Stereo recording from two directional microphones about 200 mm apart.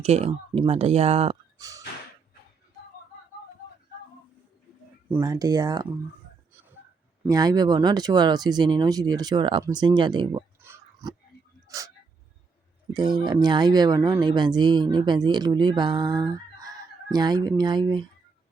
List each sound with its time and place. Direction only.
0.0 s speech: 30° right (ahead or behind)
1.5 s a sound: 15° right (ahead or behind)
5.1 s speech: 15° right (ahead or behind)
7.3 s speech: 20° right (ahead or behind)
12.9 s speech: 20° right (ahead or behind)